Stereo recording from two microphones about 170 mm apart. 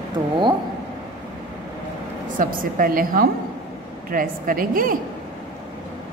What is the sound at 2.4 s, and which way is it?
A woman's voice, 55° right (ahead or behind).